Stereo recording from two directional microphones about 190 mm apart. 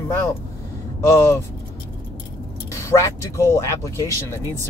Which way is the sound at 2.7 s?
15° left (ahead or behind).